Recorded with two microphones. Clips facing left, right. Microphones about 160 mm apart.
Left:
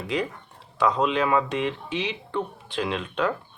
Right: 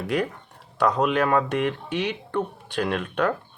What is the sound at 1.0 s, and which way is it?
Speech, 60° right (ahead or behind).